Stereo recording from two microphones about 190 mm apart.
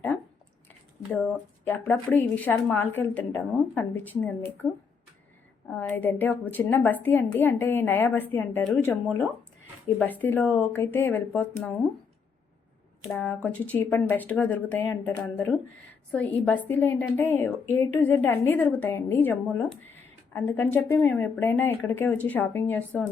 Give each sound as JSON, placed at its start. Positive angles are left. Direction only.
{"t": 1.6, "sound": "a woman's voice", "side_deg": 10}
{"t": 13.1, "sound": "a woman's voice", "side_deg": 10}